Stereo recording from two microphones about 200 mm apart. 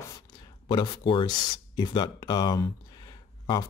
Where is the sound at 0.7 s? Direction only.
25° left (ahead or behind).